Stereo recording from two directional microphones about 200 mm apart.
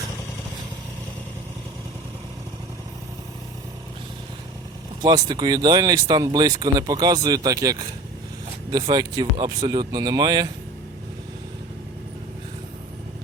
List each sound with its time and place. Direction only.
5.0 s speech: 20° right (ahead or behind)